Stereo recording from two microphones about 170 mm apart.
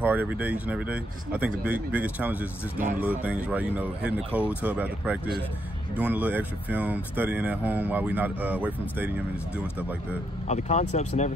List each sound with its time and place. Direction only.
0.0 s speech: 10° right (ahead or behind)
10.5 s speech: 45° left (ahead or behind)